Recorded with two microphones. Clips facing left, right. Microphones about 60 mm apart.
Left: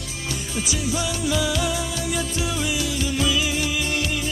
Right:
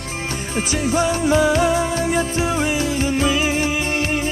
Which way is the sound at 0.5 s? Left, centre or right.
Right.